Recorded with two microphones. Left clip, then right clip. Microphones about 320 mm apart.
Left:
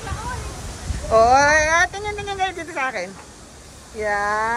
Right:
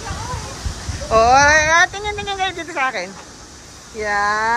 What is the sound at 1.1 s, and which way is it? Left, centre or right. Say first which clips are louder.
Speech: right 2 dB; centre.